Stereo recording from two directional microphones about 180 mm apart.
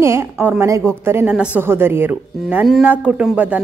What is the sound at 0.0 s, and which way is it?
A woman's voice, 15° right (ahead or behind).